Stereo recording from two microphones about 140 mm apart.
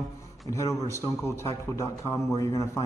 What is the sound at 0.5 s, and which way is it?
A man's voice, 20° left (ahead or behind).